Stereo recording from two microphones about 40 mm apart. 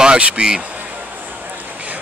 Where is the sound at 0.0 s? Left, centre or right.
Right.